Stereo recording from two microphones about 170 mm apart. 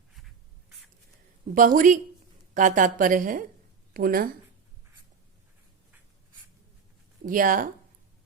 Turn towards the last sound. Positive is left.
turn(degrees=-55)  # may be behind; listen again after turning